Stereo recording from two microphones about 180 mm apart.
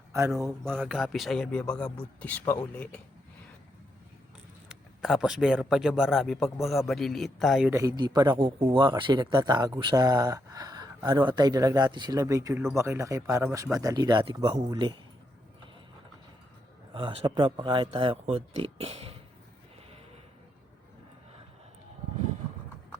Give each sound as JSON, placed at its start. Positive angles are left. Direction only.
{"t": 0.6, "sound": "speech", "side_deg": 5}
{"t": 4.7, "sound": "speech", "side_deg": -5}
{"t": 7.7, "sound": "speech", "side_deg": -20}
{"t": 16.9, "sound": "speech", "side_deg": -30}